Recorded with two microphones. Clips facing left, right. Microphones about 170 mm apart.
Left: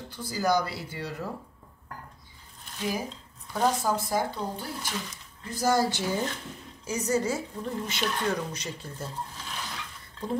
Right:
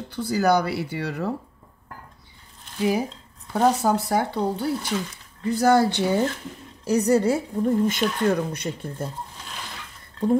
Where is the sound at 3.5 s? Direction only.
65° right (ahead or behind).